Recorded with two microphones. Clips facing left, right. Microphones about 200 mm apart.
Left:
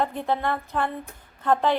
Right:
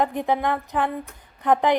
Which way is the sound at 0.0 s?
15° right (ahead or behind).